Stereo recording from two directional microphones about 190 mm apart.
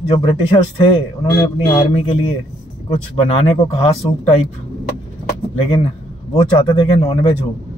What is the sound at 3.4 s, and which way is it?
Speech, 30° left (ahead or behind).